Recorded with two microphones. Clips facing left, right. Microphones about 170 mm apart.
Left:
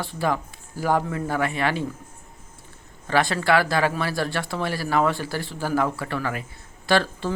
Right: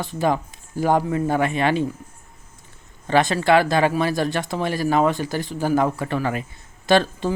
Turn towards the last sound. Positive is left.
turn(degrees=-20)  # may be behind; listen again after turning